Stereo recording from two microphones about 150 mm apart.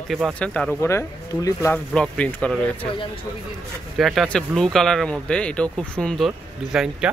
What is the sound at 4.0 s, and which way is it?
Speech, centre (ahead or behind).